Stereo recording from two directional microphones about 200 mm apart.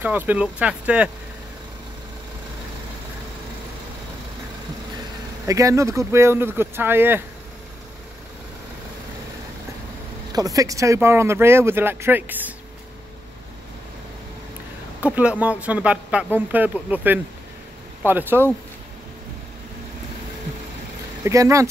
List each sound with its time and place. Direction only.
0.0 s speech: 10° right (ahead or behind)
5.5 s speech: 15° right (ahead or behind)
10.3 s speech: 15° right (ahead or behind)
15.0 s speech: 5° right (ahead or behind)
21.2 s speech: 15° right (ahead or behind)